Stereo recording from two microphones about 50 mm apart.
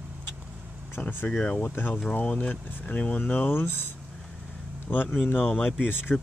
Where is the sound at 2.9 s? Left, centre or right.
Left.